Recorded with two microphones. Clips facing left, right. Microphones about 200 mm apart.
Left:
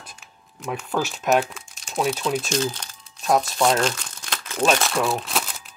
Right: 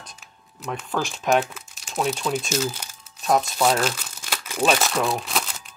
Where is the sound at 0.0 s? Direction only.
Centre (ahead or behind).